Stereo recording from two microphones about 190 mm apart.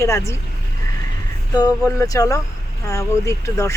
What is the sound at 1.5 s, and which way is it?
Speech, 20° left (ahead or behind).